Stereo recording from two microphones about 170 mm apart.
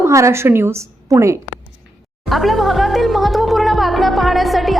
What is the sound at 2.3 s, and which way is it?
Speech, centre (ahead or behind).